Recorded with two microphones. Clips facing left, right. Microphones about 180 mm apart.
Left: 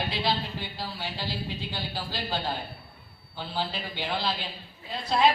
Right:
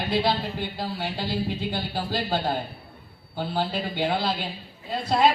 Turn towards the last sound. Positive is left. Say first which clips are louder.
# right 3 dB
turn(degrees=-50)  # may be behind; listen again after turning